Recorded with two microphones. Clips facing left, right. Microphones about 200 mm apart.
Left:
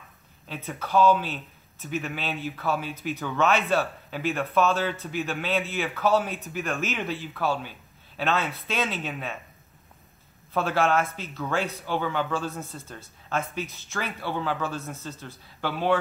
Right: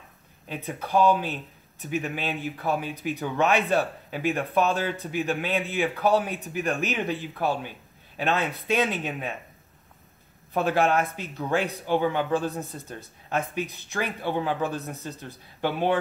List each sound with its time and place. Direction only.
0.5 s speech: 15° right (ahead or behind)
10.5 s speech: 15° right (ahead or behind)